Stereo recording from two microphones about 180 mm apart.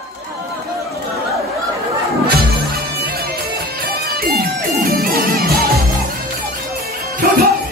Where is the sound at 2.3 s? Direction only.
60° right (ahead or behind).